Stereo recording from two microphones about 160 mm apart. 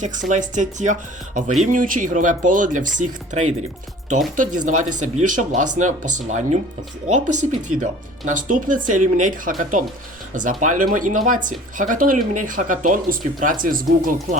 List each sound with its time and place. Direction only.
0.0 s speech: 50° right (ahead or behind)
7.8 s speech: 55° right (ahead or behind)